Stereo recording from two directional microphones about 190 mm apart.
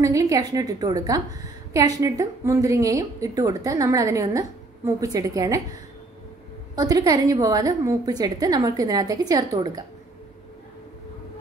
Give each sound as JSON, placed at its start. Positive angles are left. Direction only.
{"t": 0.0, "sound": "a woman's voice", "side_deg": -15}